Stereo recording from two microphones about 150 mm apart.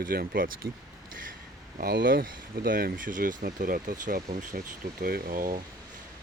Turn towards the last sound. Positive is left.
turn(degrees=-70)  # may be behind; listen again after turning